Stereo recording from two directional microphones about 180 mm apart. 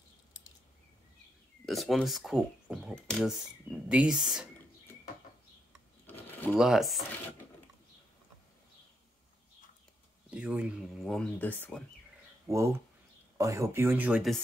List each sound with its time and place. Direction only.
1.7 s speech: centre (ahead or behind)
6.0 s a sound: 10° left (ahead or behind)
6.5 s speech: centre (ahead or behind)
10.3 s speech: 5° right (ahead or behind); by 11.8 s 10° left (ahead or behind)
12.4 s speech: 15° right (ahead or behind)